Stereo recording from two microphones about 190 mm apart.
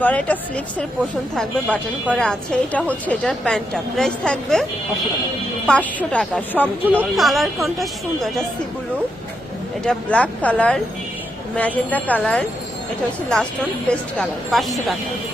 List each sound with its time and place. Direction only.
0.0 s a woman's voice: 5° left (ahead or behind)
5.6 s a woman's voice: 5° left (ahead or behind)
9.8 s a woman's voice: 5° left (ahead or behind)